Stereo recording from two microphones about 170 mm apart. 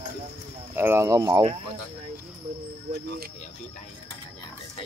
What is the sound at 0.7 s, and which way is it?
Speech, 15° right (ahead or behind).